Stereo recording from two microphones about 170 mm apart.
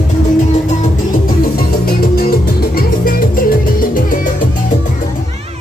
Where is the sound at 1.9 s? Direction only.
60° left (ahead or behind).